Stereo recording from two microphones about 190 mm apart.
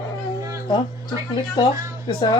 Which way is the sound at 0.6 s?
25° left (ahead or behind).